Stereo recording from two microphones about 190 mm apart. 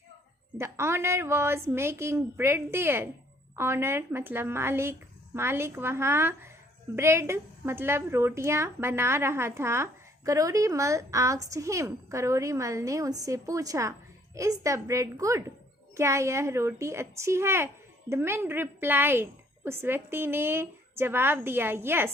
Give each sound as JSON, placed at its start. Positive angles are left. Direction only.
{"t": 0.6, "sound": "a woman's voice", "side_deg": -15}